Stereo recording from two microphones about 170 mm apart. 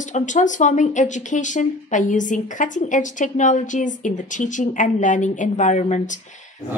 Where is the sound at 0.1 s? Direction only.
45° left (ahead or behind).